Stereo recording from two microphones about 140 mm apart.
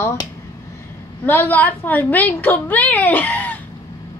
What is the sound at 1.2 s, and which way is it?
A woman's voice, 15° left (ahead or behind).